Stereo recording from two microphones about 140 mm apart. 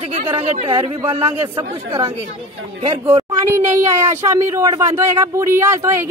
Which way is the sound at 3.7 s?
20° right (ahead or behind).